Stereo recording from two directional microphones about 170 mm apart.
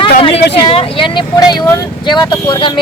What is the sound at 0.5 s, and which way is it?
Speech, 30° left (ahead or behind).